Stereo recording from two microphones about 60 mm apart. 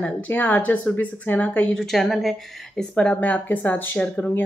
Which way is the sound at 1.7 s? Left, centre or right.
Centre.